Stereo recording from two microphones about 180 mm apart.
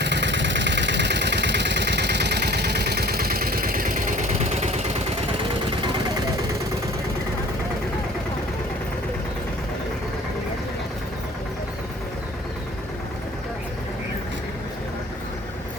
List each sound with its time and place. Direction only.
0.0 s vehicle: 75° right (ahead or behind); by 4.7 s 40° right (ahead or behind)